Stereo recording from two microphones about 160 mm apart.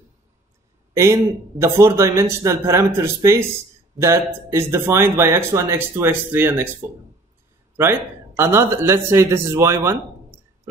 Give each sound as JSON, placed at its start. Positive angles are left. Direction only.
{"t": 0.9, "sound": "speech", "side_deg": -20}
{"t": 4.5, "sound": "speech", "side_deg": -15}
{"t": 7.7, "sound": "speech", "side_deg": -15}